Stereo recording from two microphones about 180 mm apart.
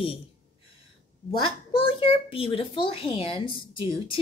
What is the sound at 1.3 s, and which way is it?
A child's voice, 30° left (ahead or behind).